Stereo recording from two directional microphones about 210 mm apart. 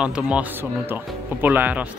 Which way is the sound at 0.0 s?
5° right (ahead or behind).